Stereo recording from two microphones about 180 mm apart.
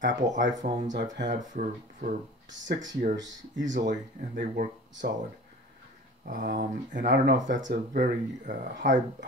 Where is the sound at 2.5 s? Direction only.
90° right.